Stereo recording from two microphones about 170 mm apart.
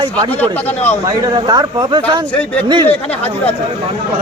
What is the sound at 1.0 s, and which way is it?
Speech, 25° right (ahead or behind).